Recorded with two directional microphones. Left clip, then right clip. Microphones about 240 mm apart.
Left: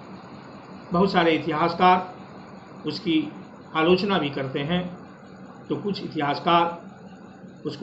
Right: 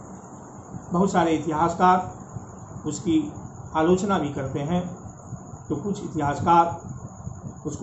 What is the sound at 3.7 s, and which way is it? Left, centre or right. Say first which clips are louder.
A man's voice: left 1 dB; centre.